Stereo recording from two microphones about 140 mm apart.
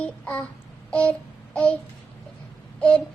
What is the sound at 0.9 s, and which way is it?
Babbling, 10° left (ahead or behind).